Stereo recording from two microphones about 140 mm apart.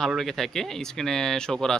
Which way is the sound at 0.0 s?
Centre (ahead or behind).